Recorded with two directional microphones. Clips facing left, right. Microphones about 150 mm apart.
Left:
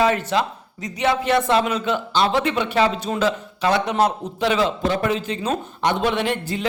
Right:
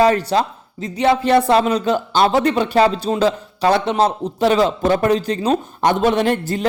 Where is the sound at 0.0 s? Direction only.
35° right (ahead or behind).